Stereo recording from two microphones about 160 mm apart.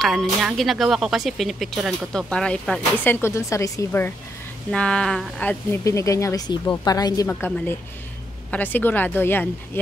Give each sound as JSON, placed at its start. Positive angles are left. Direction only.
{"t": 0.0, "sound": "speech", "side_deg": 0}
{"t": 4.6, "sound": "speech", "side_deg": 5}
{"t": 5.9, "sound": "a woman's voice", "side_deg": 20}
{"t": 7.2, "sound": "speech", "side_deg": 10}